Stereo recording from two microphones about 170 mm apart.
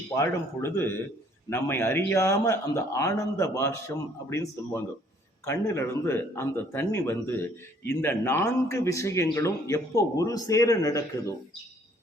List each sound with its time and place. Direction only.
0.2 s a man's voice: 15° left (ahead or behind)